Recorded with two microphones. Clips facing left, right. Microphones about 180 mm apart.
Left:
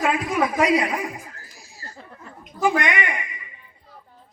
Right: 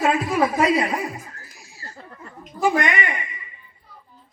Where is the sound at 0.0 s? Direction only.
35° right (ahead or behind).